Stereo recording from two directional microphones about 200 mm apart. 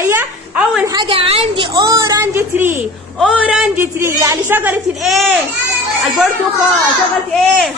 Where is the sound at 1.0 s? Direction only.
25° right (ahead or behind); by 5.2 s 5° right (ahead or behind).